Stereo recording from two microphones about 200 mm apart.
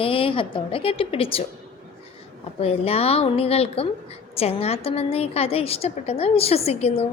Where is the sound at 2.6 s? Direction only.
30° left (ahead or behind).